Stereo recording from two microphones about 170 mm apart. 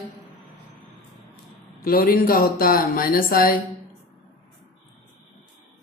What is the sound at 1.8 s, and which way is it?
Speech, 60° left (ahead or behind).